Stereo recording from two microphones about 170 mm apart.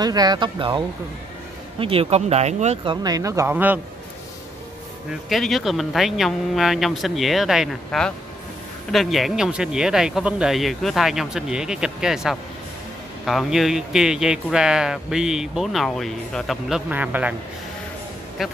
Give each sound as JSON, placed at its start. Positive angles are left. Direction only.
{"t": 0.0, "sound": "speech", "side_deg": -25}
{"t": 5.3, "sound": "speech", "side_deg": 0}
{"t": 18.4, "sound": "speech", "side_deg": 0}